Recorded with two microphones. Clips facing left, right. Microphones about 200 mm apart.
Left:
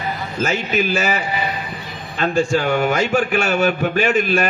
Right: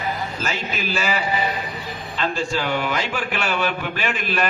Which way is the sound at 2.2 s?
50° left (ahead or behind).